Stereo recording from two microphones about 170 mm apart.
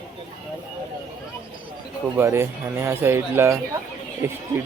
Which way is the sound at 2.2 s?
15° right (ahead or behind).